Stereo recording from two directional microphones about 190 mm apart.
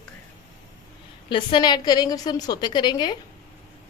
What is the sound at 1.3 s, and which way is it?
A woman's voice, 25° left (ahead or behind).